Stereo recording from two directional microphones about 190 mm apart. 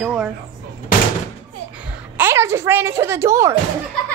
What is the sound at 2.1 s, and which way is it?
A child's voice, 15° right (ahead or behind).